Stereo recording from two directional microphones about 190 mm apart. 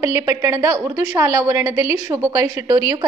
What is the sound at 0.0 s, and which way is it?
A woman's voice, 15° right (ahead or behind).